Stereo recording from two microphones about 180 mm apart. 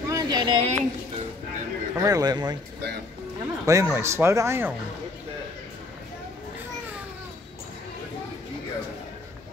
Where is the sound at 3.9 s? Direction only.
15° right (ahead or behind).